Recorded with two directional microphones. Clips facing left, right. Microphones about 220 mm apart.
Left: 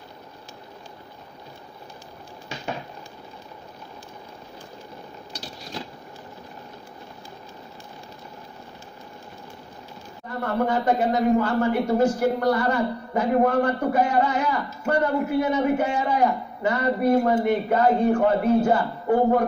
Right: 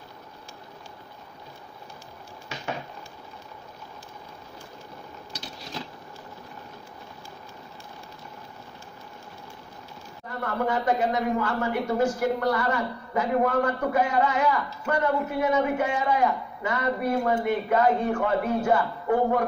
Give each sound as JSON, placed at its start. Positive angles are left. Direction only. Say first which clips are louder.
{"t": 10.4, "sound": "a man's voice", "louder": "left 3 dB", "side_deg": 35}